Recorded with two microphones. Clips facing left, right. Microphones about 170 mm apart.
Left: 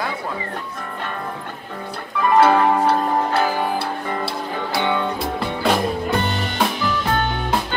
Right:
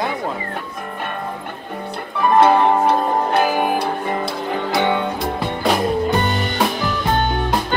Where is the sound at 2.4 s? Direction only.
15° right (ahead or behind).